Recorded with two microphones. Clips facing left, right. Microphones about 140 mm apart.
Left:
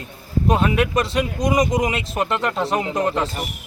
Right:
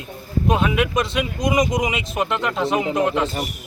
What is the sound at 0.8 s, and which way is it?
Speech, 35° left (ahead or behind).